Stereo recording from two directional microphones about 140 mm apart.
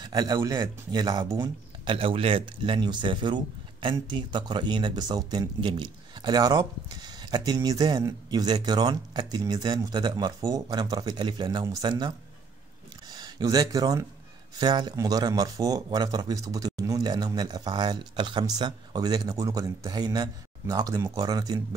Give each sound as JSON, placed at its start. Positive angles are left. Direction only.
{"t": 0.0, "sound": "speech", "side_deg": -30}
{"t": 1.9, "sound": "speech", "side_deg": -40}
{"t": 13.1, "sound": "speech", "side_deg": -25}